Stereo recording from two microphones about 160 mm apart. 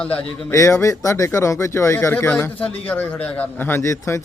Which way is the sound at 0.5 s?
20° left (ahead or behind).